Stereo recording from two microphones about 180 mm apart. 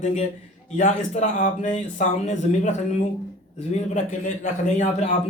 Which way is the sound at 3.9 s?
45° left (ahead or behind).